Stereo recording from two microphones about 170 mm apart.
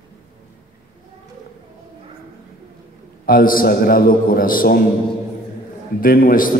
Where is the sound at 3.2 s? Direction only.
60° left (ahead or behind).